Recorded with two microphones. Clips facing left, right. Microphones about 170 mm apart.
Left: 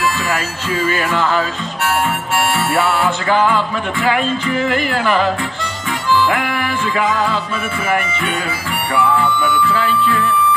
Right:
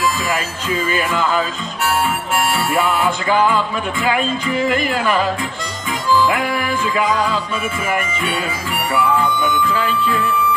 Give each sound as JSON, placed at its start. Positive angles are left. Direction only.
{"t": 3.0, "sound": "speech", "side_deg": -10}
{"t": 9.1, "sound": "speech", "side_deg": -15}